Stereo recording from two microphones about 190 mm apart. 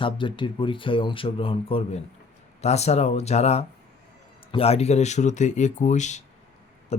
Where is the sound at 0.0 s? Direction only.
25° left (ahead or behind).